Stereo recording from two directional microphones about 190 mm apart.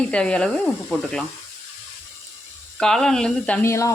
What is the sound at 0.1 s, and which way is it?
Speech, 5° left (ahead or behind).